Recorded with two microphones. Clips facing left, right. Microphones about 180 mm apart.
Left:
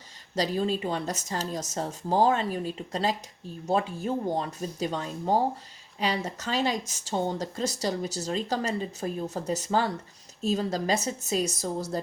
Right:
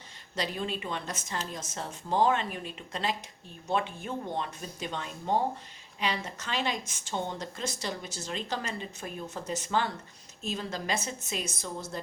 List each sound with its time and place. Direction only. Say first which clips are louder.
0.3 s speech: left 7 dB; 35° left (ahead or behind)